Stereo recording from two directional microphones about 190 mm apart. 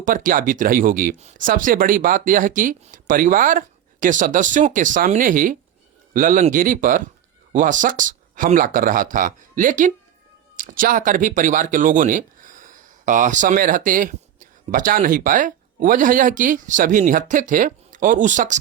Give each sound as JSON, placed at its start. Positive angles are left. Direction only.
{"t": 0.0, "sound": "speech", "side_deg": -45}